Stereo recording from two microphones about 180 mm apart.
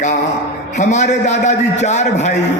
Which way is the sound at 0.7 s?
40° left (ahead or behind).